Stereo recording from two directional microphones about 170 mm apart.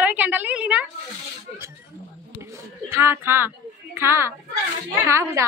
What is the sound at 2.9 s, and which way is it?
A child's voice, 15° right (ahead or behind).